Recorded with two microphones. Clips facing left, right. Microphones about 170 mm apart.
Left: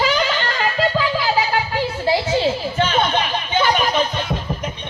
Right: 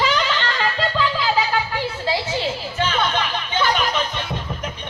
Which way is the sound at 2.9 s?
20° left (ahead or behind).